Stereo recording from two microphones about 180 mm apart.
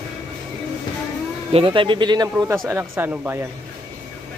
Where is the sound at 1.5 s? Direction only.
30° right (ahead or behind); by 3.3 s 10° right (ahead or behind).